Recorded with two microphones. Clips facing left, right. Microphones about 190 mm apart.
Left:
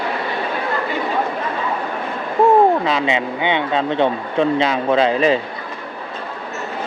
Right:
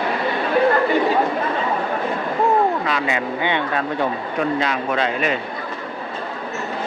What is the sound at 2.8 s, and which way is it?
Speech, 25° left (ahead or behind).